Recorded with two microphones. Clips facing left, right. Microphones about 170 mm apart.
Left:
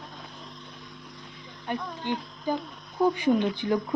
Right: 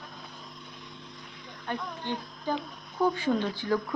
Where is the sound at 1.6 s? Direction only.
15° left (ahead or behind).